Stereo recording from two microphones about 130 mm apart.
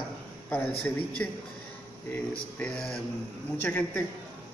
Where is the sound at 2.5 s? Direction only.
10° left (ahead or behind).